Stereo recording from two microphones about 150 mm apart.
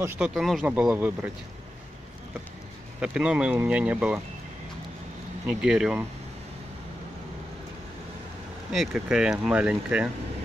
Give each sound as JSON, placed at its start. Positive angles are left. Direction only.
{"t": 0.2, "sound": "speech", "side_deg": 0}
{"t": 3.0, "sound": "speech", "side_deg": -5}
{"t": 5.5, "sound": "speech", "side_deg": -5}
{"t": 8.7, "sound": "speech", "side_deg": -5}